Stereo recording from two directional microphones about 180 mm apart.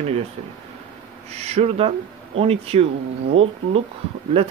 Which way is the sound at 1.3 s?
35° right (ahead or behind).